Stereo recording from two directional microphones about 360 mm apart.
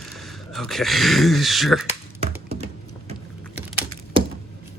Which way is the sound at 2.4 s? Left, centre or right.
Centre.